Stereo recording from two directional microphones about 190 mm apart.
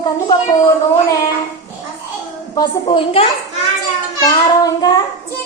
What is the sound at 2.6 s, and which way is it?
Child singing, 25° left (ahead or behind).